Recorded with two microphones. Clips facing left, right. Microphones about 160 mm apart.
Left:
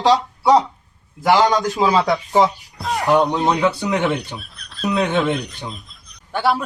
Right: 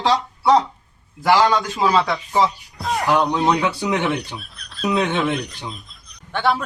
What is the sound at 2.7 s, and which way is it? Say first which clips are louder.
A man's voice: left 3 dB; centre (ahead or behind).